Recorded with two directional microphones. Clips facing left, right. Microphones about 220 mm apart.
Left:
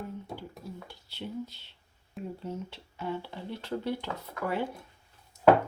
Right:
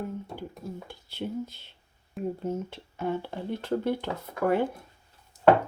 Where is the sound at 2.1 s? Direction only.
50° right (ahead or behind).